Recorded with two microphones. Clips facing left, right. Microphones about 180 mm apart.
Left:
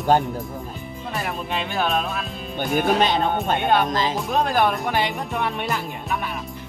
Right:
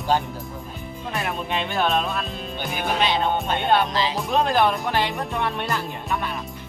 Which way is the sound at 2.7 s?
45° left (ahead or behind).